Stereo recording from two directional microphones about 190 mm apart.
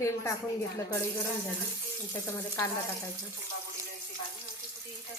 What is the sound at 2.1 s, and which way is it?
Speech, 15° left (ahead or behind).